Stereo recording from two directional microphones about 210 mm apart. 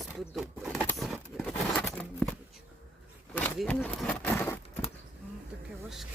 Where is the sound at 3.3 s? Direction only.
5° left (ahead or behind).